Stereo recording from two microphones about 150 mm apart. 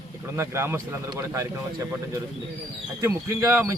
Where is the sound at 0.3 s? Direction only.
15° right (ahead or behind).